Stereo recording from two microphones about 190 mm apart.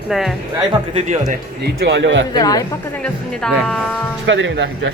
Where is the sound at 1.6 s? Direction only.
60° right (ahead or behind).